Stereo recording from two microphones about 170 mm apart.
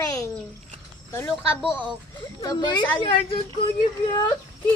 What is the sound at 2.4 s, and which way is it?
Speech, 25° left (ahead or behind).